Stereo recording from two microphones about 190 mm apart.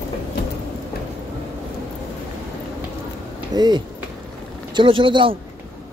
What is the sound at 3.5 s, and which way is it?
Speech, 20° right (ahead or behind).